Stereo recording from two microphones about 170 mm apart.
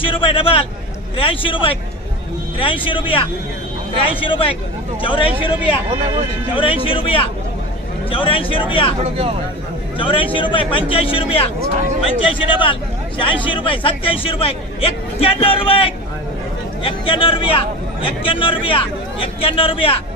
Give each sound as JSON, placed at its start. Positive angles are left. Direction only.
{"t": 0.0, "sound": "a sound", "side_deg": 30}
{"t": 1.1, "sound": "a man's voice", "side_deg": 30}
{"t": 9.0, "sound": "speech", "side_deg": -35}
{"t": 9.9, "sound": "a man's voice", "side_deg": 30}